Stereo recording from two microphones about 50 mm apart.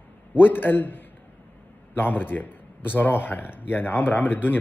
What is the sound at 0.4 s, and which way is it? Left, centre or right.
Speech, left.